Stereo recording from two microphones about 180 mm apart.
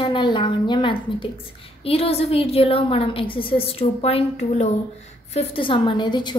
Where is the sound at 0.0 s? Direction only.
25° left (ahead or behind).